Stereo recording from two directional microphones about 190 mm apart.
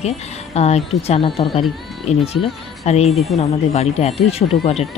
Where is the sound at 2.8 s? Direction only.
35° left (ahead or behind).